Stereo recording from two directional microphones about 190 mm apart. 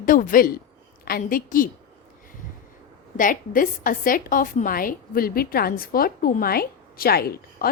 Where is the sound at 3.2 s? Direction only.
45° left (ahead or behind).